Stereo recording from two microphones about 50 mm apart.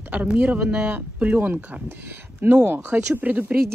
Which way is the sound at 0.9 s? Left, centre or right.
Right.